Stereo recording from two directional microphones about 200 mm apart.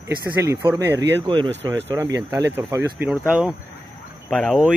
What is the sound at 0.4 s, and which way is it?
Speech, 15° right (ahead or behind).